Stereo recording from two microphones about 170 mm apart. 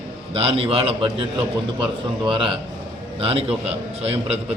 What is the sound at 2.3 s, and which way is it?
A man's voice, 30° right (ahead or behind).